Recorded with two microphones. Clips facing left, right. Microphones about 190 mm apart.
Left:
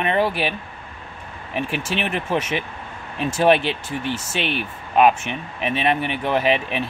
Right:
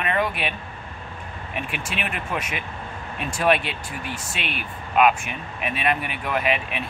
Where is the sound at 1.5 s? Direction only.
30° left (ahead or behind).